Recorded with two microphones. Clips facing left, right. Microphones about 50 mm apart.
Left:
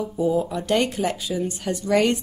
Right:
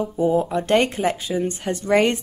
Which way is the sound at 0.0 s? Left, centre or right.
Right.